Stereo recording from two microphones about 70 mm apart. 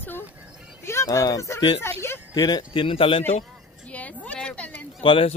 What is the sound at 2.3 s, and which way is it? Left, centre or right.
Speech, left.